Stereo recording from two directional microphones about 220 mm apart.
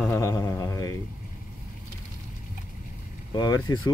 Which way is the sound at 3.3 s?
20° left (ahead or behind).